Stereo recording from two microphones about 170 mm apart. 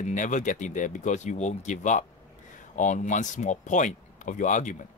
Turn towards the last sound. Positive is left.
turn(degrees=45)  # may be behind; listen again after turning